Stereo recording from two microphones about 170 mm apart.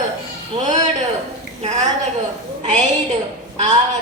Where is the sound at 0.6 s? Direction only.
45° right (ahead or behind).